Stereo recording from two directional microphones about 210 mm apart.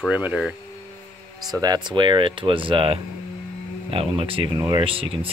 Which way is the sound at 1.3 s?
20° right (ahead or behind).